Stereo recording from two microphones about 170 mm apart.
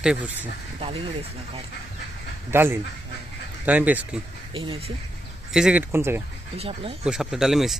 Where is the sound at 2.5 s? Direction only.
15° right (ahead or behind).